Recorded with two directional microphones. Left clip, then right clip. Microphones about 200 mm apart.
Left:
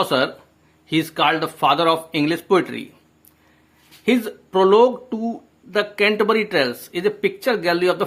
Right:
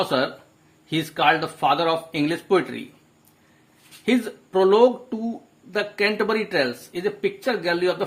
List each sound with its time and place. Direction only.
0.0 s speech: 20° left (ahead or behind)
4.0 s speech: 25° left (ahead or behind)